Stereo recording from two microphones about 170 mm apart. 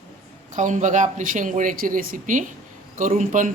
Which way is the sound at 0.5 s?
50° right (ahead or behind).